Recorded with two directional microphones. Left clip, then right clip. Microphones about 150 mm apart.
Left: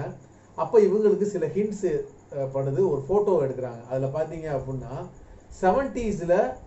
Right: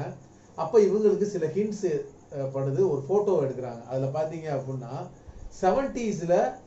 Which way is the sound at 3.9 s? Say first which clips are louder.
Left 1 dB; 20° left (ahead or behind).